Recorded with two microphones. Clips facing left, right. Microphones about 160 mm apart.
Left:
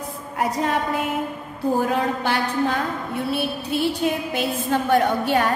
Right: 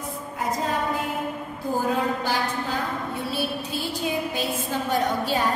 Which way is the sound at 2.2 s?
65° left (ahead or behind).